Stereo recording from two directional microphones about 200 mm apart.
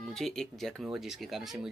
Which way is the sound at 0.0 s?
Centre (ahead or behind).